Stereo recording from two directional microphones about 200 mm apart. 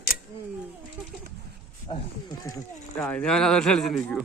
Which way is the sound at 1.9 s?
25° left (ahead or behind).